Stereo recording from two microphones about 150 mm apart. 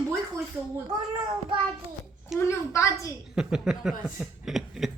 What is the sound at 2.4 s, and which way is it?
Speech, 20° left (ahead or behind).